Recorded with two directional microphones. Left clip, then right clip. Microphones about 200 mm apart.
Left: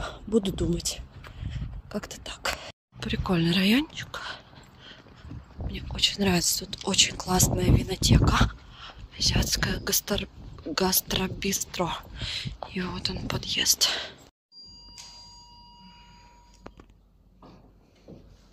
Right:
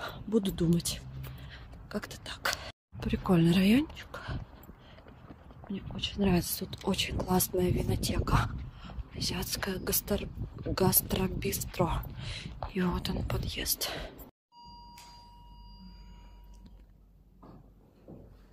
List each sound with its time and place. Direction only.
0.0 s a sound: 15° left (ahead or behind)
3.0 s speech: 5° right (ahead or behind)
5.7 s speech: 15° left (ahead or behind)
6.3 s speech: 5° right (ahead or behind)
13.3 s speech: 5° right (ahead or behind)